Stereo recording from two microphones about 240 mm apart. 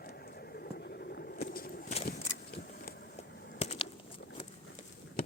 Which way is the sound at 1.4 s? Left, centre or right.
Left.